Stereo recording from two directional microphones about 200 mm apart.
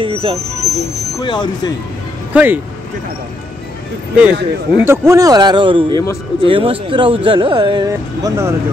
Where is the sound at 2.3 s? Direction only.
10° right (ahead or behind).